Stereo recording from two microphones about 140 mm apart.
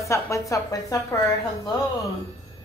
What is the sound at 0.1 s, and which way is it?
Speech, 20° left (ahead or behind).